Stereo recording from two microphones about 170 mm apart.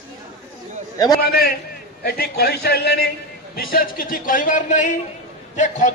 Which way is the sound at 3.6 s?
60° left (ahead or behind).